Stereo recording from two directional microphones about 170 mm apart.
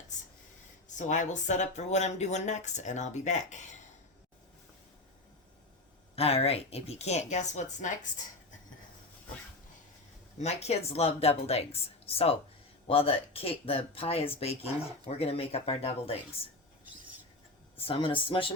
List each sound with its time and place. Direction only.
0.9 s speech: 45° left (ahead or behind)
6.1 s speech: 35° left (ahead or behind)
10.3 s speech: 40° left (ahead or behind)
17.7 s speech: 35° left (ahead or behind)